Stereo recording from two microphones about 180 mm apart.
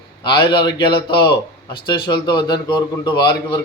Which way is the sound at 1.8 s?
25° left (ahead or behind).